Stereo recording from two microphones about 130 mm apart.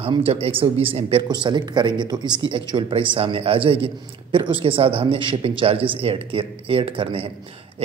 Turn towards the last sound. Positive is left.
turn(degrees=-45)  # may be behind; listen again after turning